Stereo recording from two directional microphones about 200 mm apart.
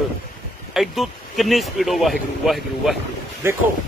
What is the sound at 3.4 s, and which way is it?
Speech, 10° right (ahead or behind).